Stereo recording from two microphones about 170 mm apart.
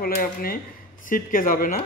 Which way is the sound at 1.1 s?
55° left (ahead or behind).